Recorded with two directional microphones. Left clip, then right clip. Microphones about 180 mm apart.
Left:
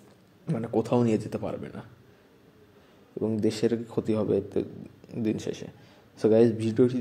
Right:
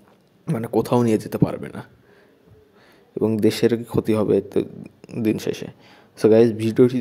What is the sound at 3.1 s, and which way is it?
Speech, 30° right (ahead or behind).